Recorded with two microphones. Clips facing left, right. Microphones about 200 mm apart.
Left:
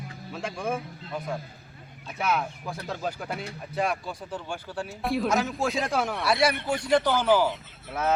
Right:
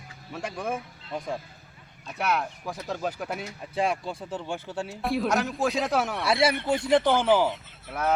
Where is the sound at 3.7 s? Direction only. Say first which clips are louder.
Right 1 dB; 25° right (ahead or behind).